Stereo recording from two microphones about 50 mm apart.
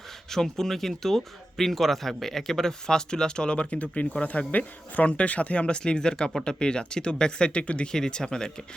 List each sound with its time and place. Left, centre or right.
0.3 s speech: centre